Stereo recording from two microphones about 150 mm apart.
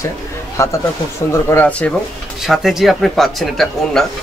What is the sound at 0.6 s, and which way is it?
Speech, 20° left (ahead or behind).